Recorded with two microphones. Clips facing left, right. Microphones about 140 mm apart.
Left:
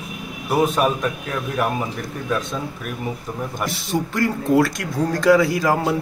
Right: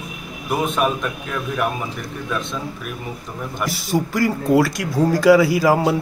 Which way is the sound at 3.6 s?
5° right (ahead or behind).